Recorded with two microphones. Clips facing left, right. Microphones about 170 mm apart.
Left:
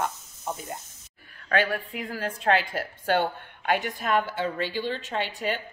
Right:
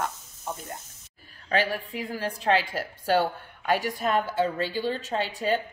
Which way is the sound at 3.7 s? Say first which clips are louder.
Right 1 dB; 35° right (ahead or behind).